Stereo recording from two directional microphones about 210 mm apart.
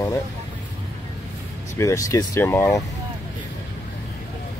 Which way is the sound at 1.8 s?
15° left (ahead or behind).